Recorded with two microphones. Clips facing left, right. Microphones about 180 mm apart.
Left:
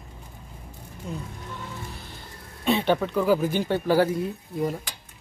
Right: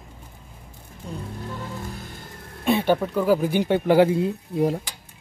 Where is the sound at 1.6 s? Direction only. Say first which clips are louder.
Right 4 dB; 45° right (ahead or behind).